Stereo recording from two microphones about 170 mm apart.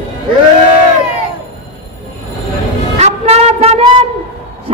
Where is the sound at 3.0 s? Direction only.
40° right (ahead or behind).